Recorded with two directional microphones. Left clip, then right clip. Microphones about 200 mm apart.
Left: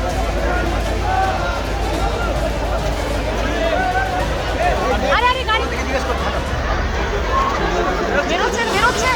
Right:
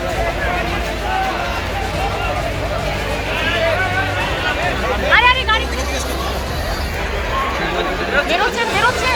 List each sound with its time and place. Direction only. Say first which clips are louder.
5.1 s vehicle: right 6 dB; 20° left (ahead or behind)